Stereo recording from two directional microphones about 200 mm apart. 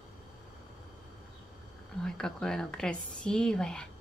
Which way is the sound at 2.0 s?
5° left (ahead or behind).